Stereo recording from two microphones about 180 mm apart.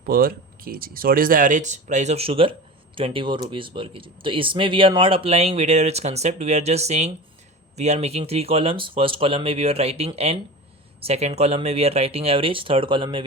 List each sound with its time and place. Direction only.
0.0 s speech: 55° right (ahead or behind); by 13.2 s 25° right (ahead or behind)